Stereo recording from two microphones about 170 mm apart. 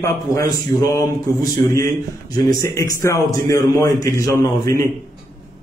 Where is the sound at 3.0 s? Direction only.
20° left (ahead or behind).